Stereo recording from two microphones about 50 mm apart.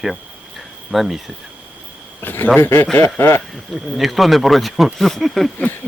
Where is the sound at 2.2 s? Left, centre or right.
Left.